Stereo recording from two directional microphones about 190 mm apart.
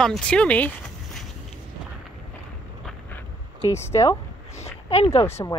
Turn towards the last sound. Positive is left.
turn(degrees=35)  # may be behind; listen again after turning